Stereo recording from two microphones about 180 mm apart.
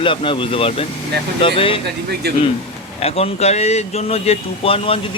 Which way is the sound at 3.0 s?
35° left (ahead or behind).